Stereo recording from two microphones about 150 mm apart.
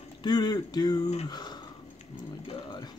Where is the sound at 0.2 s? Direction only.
30° left (ahead or behind).